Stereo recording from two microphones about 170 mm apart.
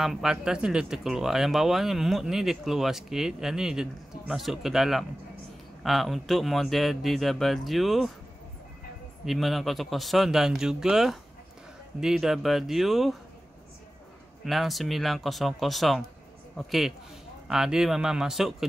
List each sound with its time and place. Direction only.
0.0 s speech: centre (ahead or behind)
9.2 s speech: centre (ahead or behind)
14.4 s speech: centre (ahead or behind)